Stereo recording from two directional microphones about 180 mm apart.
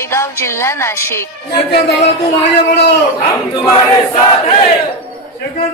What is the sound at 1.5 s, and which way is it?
Speech, 60° left (ahead or behind).